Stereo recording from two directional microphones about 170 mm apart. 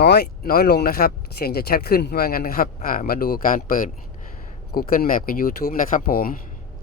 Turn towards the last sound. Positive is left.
turn(degrees=55)  # may be behind; listen again after turning